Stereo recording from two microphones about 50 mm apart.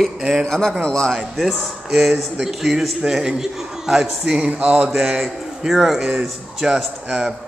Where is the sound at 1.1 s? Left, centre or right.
Centre.